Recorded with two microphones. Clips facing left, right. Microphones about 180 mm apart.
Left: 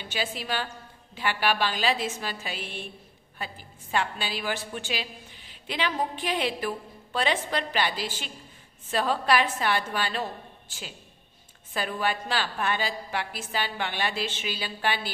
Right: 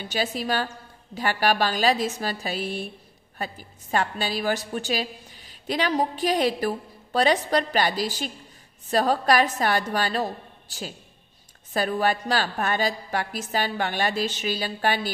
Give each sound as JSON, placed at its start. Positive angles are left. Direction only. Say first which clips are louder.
{"t": 0.1, "sound": "a woman's voice", "louder": "right 5 dB", "side_deg": -40}